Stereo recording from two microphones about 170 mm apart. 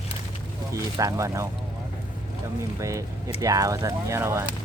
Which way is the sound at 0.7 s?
20° right (ahead or behind).